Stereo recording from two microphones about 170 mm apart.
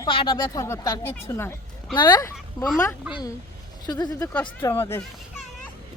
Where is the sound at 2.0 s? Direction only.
25° left (ahead or behind).